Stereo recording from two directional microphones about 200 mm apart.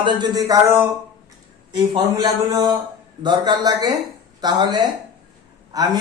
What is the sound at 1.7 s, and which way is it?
A woman's voice, 20° right (ahead or behind).